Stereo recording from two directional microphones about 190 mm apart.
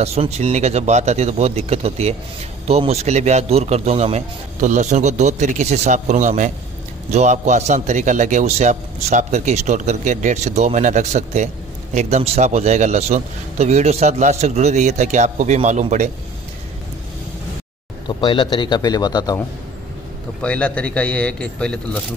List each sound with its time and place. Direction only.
0.0 s a man's voice: 35° right (ahead or behind)
18.0 s a man's voice: 25° left (ahead or behind)
20.4 s speech: 5° left (ahead or behind)